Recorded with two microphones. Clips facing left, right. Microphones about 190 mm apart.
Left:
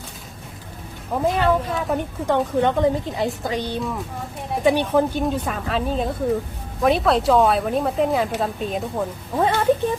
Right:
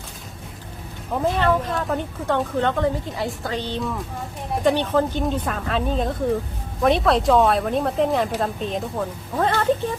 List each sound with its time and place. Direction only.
1.1 s a woman's voice: 10° left (ahead or behind)